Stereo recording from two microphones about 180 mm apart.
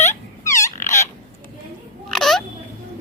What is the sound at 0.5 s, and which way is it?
Frog, 40° left (ahead or behind).